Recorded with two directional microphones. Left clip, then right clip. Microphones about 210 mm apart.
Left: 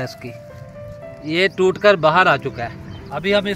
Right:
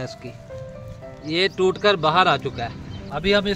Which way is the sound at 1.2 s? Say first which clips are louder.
Left 3 dB; 40° left (ahead or behind).